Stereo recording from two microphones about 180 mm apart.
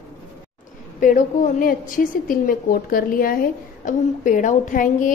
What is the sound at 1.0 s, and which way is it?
A woman's voice, 45° left (ahead or behind).